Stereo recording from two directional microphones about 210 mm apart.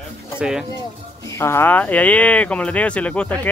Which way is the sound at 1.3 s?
10° left (ahead or behind).